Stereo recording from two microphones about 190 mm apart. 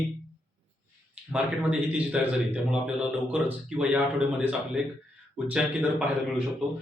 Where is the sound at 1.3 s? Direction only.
5° right (ahead or behind).